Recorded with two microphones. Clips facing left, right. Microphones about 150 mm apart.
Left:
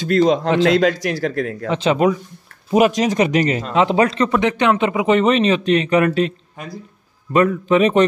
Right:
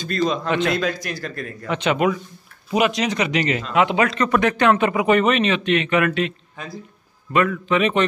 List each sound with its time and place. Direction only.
0.0 s a man's voice: 80° left
1.7 s speech: 30° left (ahead or behind)
7.3 s speech: 40° left (ahead or behind)